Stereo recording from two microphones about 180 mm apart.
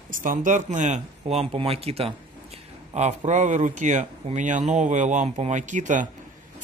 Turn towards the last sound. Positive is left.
turn(degrees=-45)  # may be behind; listen again after turning